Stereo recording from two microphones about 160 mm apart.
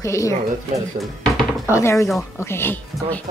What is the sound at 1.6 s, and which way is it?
Speech, 15° left (ahead or behind).